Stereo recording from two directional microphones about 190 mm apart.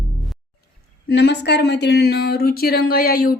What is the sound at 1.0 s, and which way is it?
Speech, 60° left (ahead or behind).